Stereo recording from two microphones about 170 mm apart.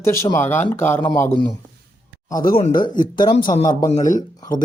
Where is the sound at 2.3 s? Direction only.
30° left (ahead or behind).